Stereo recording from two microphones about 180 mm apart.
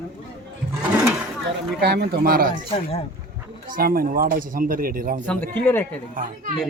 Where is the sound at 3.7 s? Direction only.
55° right (ahead or behind).